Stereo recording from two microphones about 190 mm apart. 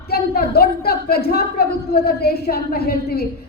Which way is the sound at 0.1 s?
55° left (ahead or behind).